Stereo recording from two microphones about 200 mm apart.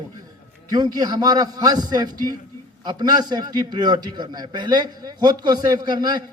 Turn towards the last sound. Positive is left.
turn(degrees=-20)  # may be behind; listen again after turning